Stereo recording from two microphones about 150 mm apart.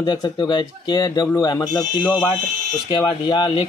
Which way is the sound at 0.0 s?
30° left (ahead or behind).